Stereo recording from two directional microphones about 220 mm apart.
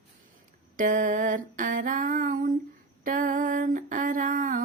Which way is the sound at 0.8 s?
35° right (ahead or behind).